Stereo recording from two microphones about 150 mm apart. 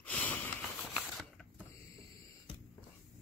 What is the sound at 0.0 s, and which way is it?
Sniff, 10° left (ahead or behind).